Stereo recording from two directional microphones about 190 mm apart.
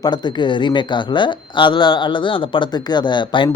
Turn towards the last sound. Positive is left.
turn(degrees=25)  # may be behind; listen again after turning